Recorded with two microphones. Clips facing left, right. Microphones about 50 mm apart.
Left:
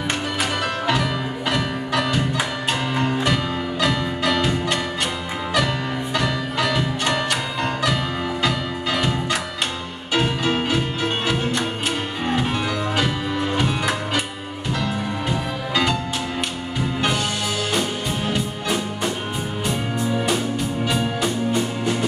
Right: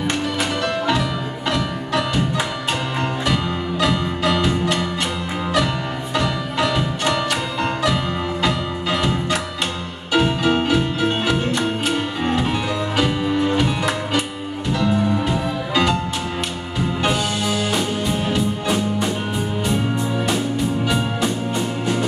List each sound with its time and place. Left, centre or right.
3.8 s music: centre
6.6 s music: centre
12.9 s music: centre
14.7 s music: centre
17.7 s music: centre